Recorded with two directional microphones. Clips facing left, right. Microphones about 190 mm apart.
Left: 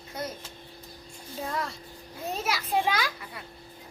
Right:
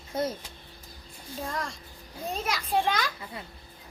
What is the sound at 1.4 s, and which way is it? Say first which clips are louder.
Music: left 2 dB; 5° left (ahead or behind).